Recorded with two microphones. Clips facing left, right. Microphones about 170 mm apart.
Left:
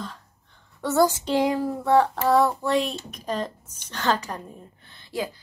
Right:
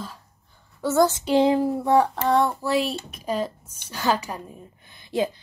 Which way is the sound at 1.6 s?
15° right (ahead or behind).